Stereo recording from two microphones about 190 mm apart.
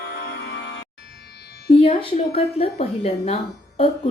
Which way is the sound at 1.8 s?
30° left (ahead or behind).